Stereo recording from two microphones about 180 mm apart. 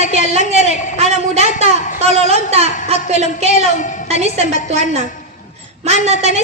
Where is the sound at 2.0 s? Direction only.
35° right (ahead or behind).